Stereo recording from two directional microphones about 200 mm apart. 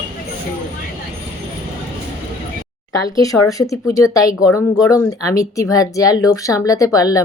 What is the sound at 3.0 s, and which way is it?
Speech, 15° left (ahead or behind).